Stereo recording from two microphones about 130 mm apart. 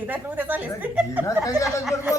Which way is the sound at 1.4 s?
25° left (ahead or behind).